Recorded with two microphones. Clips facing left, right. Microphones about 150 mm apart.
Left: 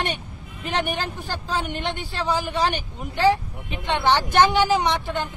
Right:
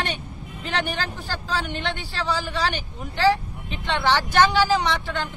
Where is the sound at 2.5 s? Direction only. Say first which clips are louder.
Left 3 dB; 50° left (ahead or behind).